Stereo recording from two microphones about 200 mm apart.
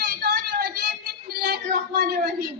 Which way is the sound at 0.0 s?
55° right (ahead or behind).